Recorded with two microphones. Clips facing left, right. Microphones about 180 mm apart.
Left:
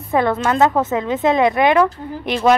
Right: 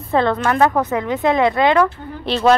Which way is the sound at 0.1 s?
15° left (ahead or behind).